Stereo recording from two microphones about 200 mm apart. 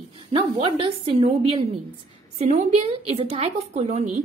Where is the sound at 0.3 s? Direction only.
30° right (ahead or behind).